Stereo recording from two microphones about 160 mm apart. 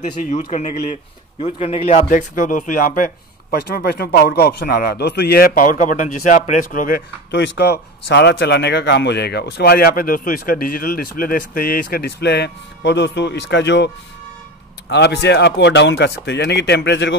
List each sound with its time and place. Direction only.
0.3 s speech: 45° left (ahead or behind)
2.0 s speech: 55° left (ahead or behind)
3.5 s a man's voice: 80° left
14.9 s speech: 90° left